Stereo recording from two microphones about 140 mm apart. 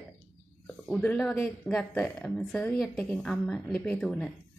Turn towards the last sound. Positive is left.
turn(degrees=5)  # may be behind; listen again after turning